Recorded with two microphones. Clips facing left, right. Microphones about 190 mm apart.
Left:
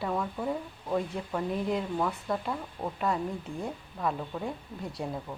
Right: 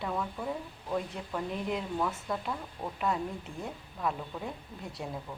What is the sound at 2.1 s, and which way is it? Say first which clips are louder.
Speech: left 3 dB; centre (ahead or behind).